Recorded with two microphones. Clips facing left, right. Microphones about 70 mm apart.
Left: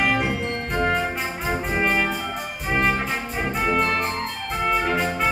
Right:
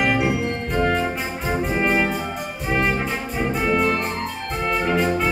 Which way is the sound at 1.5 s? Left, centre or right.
Centre.